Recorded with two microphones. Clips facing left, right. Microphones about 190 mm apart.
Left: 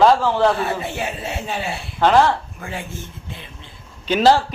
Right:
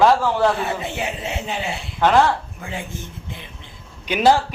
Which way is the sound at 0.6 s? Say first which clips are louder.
Left 1 dB; 20° right (ahead or behind).